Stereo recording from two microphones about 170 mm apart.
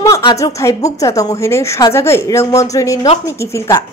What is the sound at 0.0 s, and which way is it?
Music, 25° left (ahead or behind).